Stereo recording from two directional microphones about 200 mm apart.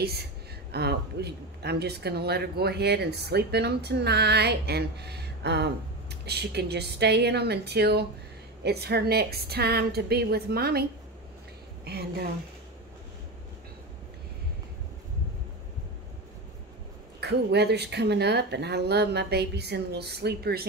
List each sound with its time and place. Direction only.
0.0 s a woman's voice: 55° right (ahead or behind)
17.2 s speech: 55° right (ahead or behind)